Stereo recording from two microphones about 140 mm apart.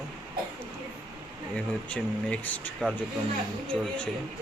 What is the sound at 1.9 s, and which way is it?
Speech, 10° left (ahead or behind).